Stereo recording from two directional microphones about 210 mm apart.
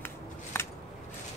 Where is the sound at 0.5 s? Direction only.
10° left (ahead or behind).